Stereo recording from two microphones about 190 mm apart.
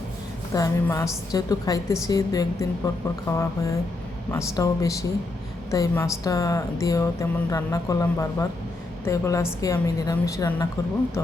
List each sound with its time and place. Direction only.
0.5 s a woman's voice: 15° left (ahead or behind)